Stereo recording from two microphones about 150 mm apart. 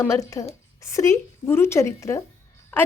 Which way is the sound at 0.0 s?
20° left (ahead or behind).